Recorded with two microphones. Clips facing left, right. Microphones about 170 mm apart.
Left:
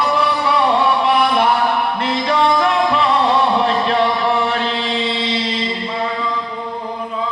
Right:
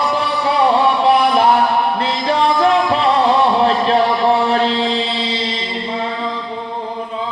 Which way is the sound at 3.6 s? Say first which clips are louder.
Right 2 dB; 35° right (ahead or behind).